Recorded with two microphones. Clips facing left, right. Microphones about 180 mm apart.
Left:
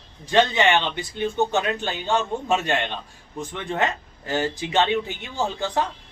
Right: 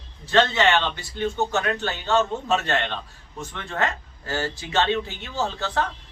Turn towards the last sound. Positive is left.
turn(degrees=15)  # may be behind; listen again after turning